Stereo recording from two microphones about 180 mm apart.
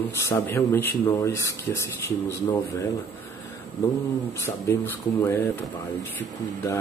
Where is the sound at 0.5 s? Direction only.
10° left (ahead or behind).